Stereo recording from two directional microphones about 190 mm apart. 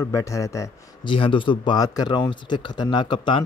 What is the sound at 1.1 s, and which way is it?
Speech, 25° left (ahead or behind).